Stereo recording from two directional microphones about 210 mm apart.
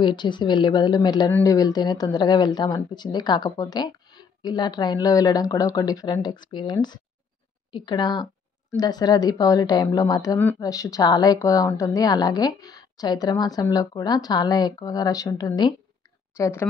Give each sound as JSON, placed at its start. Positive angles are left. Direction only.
{"t": 0.0, "sound": "a woman's voice", "side_deg": 20}